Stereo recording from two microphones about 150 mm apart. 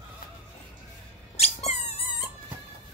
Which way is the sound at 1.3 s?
45° left (ahead or behind).